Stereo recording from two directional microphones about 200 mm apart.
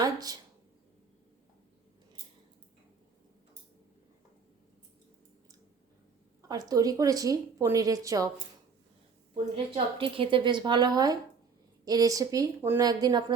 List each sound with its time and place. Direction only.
0.0 s a sound: 20° right (ahead or behind)
6.5 s a woman's voice: 20° right (ahead or behind)
9.7 s a woman's voice: 25° right (ahead or behind)